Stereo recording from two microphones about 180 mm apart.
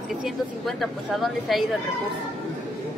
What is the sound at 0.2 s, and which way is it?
Speech, centre (ahead or behind).